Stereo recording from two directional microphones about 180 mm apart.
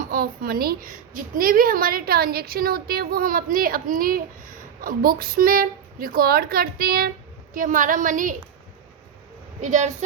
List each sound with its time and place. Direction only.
0.0 s a woman's voice: 55° right (ahead or behind)
9.6 s speech: 40° right (ahead or behind)